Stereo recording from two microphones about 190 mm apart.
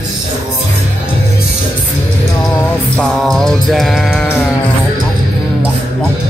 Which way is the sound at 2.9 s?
5° left (ahead or behind).